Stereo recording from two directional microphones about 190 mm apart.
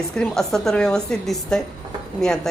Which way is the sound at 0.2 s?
Centre (ahead or behind).